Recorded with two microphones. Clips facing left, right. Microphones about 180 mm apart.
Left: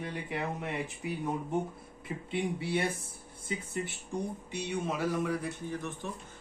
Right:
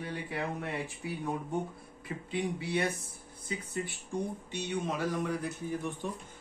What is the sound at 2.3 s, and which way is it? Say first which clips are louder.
Speech: even; 25° left (ahead or behind).